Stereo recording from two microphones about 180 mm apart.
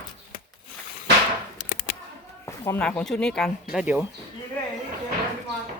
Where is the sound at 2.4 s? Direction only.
15° left (ahead or behind).